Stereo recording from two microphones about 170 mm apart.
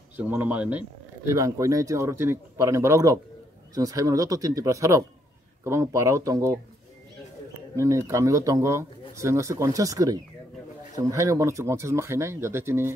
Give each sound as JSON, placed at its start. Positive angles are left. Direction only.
{"t": 0.2, "sound": "speech", "side_deg": -10}
{"t": 1.3, "sound": "speech", "side_deg": -20}
{"t": 7.7, "sound": "speech", "side_deg": -20}